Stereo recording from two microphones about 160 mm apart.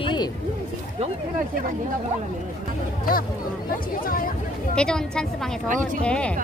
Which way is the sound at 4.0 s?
65° left (ahead or behind).